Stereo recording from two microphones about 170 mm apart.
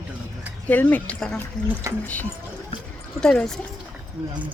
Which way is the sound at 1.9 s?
15° right (ahead or behind).